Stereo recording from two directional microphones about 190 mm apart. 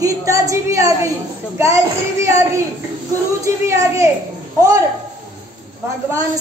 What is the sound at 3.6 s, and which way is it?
Speech, 15° right (ahead or behind).